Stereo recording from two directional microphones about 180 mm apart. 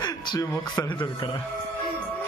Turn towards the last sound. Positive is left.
turn(degrees=25)  # may be behind; listen again after turning